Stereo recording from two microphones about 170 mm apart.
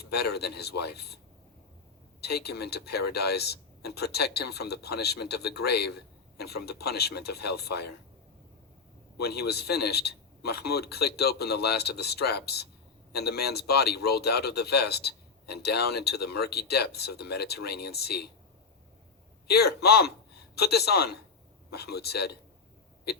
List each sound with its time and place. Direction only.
0.1 s speech: 70° left (ahead or behind)
2.2 s speech: 70° left (ahead or behind)
9.2 s speech: 70° left (ahead or behind)
19.5 s speech: 70° left (ahead or behind)